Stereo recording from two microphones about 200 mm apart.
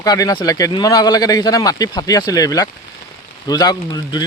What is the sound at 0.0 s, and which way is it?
Speech, 15° left (ahead or behind).